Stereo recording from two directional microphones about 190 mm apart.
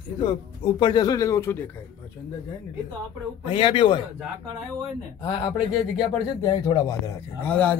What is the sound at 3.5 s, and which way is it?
Speech, 25° left (ahead or behind).